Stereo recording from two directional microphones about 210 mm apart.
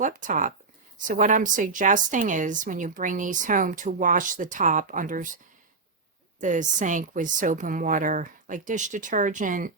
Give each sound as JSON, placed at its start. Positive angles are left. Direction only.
{"t": 0.0, "sound": "a woman's voice", "side_deg": -35}
{"t": 6.4, "sound": "a woman's voice", "side_deg": -35}